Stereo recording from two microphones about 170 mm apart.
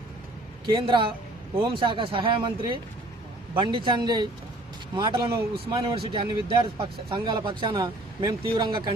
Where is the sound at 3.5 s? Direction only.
30° right (ahead or behind).